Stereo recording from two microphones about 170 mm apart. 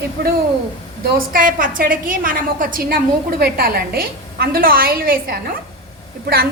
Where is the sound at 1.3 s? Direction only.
55° right (ahead or behind).